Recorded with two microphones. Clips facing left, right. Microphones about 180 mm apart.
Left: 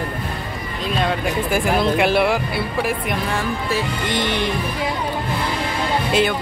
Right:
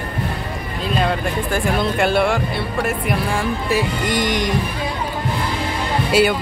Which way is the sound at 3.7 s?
10° right (ahead or behind).